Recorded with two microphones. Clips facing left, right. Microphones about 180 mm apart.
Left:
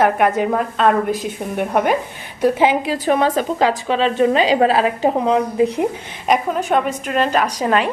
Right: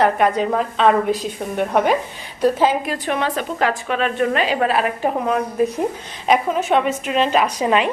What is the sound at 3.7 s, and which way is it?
A woman's voice, 30° left (ahead or behind).